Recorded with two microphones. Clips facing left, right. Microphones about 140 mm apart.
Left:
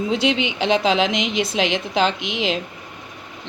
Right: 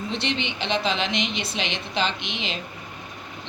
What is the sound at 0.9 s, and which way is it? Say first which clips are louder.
Speech: left 8 dB; 75° left (ahead or behind).